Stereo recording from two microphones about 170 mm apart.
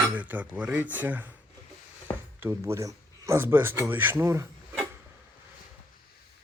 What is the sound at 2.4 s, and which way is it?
Speech, 15° right (ahead or behind).